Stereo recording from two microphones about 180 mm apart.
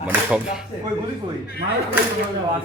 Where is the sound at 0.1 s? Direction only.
5° right (ahead or behind).